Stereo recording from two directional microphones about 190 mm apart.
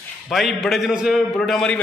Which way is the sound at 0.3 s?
Centre (ahead or behind).